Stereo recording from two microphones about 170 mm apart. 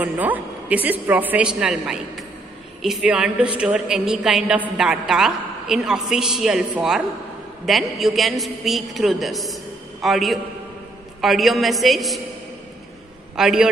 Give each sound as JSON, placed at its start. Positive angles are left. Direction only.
{"t": 0.0, "sound": "a woman's voice", "side_deg": -10}
{"t": 13.4, "sound": "a woman's voice", "side_deg": -5}